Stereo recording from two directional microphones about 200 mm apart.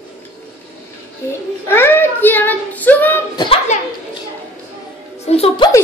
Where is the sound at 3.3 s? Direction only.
25° left (ahead or behind).